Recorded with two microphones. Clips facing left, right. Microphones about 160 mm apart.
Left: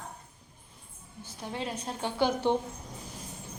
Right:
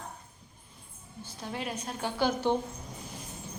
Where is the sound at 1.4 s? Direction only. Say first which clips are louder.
Left 1 dB; 25° left (ahead or behind).